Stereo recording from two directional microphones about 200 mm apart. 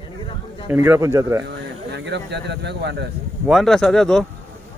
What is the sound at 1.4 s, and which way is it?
Speech, 60° right (ahead or behind).